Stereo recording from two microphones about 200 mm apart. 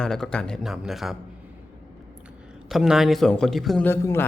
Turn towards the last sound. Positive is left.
turn(degrees=10)  # may be behind; listen again after turning